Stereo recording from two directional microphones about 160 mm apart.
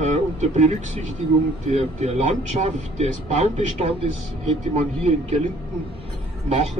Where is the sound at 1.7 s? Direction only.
40° right (ahead or behind).